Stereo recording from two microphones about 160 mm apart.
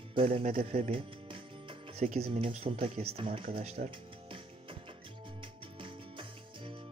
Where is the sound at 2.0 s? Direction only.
50° right (ahead or behind).